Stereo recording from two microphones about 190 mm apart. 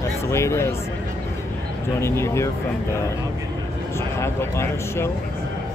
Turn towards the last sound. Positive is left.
turn(degrees=15)  # may be behind; listen again after turning